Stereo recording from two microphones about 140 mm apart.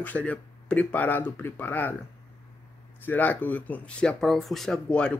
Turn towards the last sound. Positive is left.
turn(degrees=5)  # may be behind; listen again after turning